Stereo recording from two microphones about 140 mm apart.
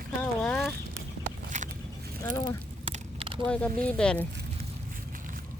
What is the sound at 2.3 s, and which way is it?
Speech, 25° left (ahead or behind).